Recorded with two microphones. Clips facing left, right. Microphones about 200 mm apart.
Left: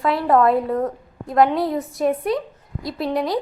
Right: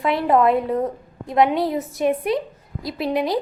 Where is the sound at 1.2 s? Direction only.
Centre (ahead or behind).